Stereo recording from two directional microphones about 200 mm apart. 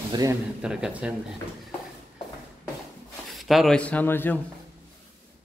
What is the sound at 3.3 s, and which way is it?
A man's voice, centre (ahead or behind).